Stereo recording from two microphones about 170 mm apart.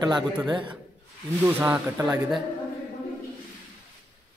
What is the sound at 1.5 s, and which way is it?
Speech, 10° right (ahead or behind).